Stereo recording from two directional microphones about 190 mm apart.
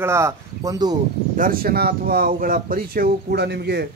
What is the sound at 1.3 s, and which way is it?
Speech, 50° right (ahead or behind).